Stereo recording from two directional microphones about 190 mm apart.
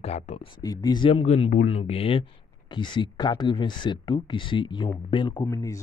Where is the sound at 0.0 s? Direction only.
35° left (ahead or behind).